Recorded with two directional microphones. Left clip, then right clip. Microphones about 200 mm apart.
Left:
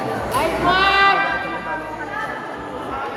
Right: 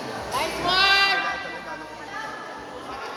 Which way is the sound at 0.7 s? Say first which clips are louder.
Left 4 dB; 55° right (ahead or behind).